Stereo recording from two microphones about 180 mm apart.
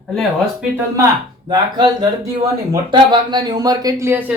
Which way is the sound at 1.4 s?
25° right (ahead or behind).